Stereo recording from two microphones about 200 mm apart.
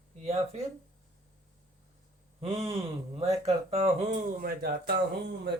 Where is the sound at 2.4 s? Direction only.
30° right (ahead or behind).